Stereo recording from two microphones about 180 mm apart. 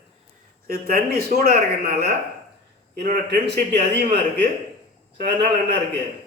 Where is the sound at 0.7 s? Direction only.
55° right (ahead or behind).